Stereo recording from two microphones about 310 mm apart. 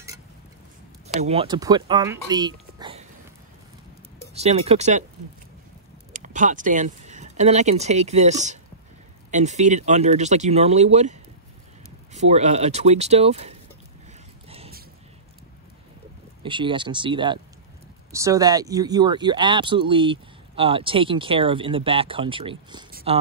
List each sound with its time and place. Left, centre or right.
1.0 s speech: centre
4.3 s speech: centre
6.1 s speech: right
14.5 s a sound: centre
16.4 s speech: centre
22.8 s a sound: right